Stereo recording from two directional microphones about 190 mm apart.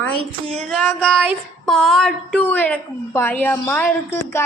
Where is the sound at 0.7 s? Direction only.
5° left (ahead or behind).